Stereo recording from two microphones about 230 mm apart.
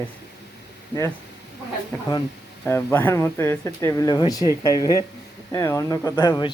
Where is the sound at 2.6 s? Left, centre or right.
Centre.